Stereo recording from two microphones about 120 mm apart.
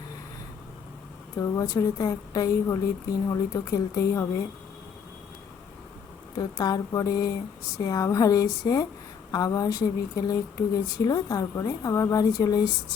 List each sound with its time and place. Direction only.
1.4 s a woman's voice: 25° left (ahead or behind)
6.3 s a woman's voice: 35° left (ahead or behind)